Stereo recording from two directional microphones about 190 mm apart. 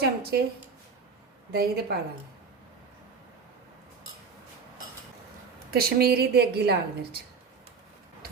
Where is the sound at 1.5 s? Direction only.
55° right (ahead or behind).